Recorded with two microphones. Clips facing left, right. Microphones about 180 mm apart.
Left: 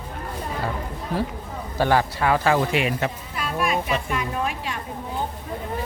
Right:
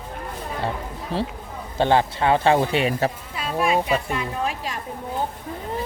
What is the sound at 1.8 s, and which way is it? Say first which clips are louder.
Speech: right 1 dB; 25° right (ahead or behind).